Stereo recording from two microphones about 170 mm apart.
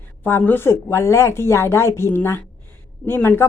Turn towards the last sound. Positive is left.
turn(degrees=10)  # may be behind; listen again after turning